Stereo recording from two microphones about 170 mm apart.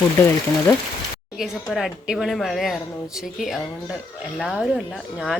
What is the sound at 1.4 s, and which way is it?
A woman's voice, centre (ahead or behind).